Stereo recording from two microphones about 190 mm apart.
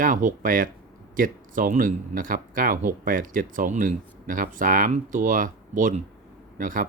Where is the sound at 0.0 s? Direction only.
45° right (ahead or behind).